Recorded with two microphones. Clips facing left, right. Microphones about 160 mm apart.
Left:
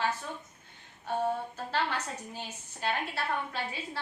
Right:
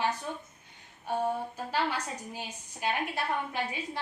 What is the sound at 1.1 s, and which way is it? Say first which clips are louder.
A woman's voice: even; 10° right (ahead or behind).